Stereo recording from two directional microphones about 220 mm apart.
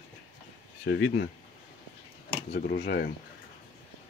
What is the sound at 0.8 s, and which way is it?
Speech, 55° left (ahead or behind).